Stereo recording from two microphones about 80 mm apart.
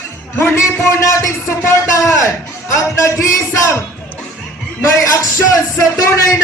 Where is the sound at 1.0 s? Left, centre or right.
Left.